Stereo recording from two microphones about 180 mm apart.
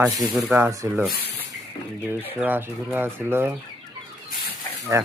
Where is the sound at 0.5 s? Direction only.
15° right (ahead or behind).